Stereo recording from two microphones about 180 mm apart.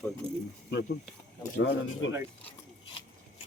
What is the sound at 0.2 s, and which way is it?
Speech, 30° right (ahead or behind).